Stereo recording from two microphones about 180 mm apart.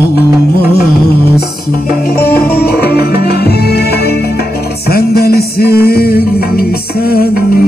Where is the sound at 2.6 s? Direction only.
60° left (ahead or behind).